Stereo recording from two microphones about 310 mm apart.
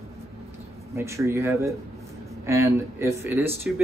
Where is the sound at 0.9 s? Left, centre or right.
Centre.